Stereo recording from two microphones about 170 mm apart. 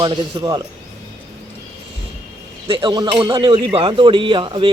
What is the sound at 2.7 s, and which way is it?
Speech, 30° right (ahead or behind).